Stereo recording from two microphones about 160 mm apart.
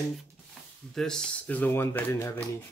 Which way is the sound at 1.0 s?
5° left (ahead or behind).